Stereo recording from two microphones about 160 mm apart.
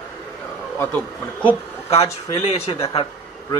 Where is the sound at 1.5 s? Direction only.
40° left (ahead or behind).